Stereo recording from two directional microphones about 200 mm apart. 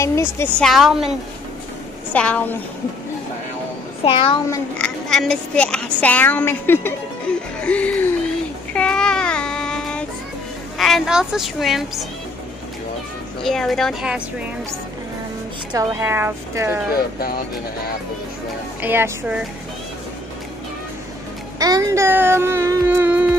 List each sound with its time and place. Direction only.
0.0 s speech: 15° left (ahead or behind)
0.7 s speech: centre (ahead or behind)
2.1 s speech: 5° left (ahead or behind)
4.0 s a child's voice: 25° left (ahead or behind)
4.5 s speech: 5° left (ahead or behind)
8.7 s child singing: 5° left (ahead or behind)
10.8 s speech: centre (ahead or behind)
13.4 s speech: centre (ahead or behind)
15.7 s a sound: 10° right (ahead or behind)
16.9 s speech: 50° left (ahead or behind)
18.8 s a sound: 10° right (ahead or behind)
21.5 s a sound: 20° right (ahead or behind)